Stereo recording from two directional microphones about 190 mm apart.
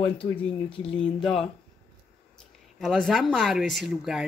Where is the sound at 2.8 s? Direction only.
Centre (ahead or behind).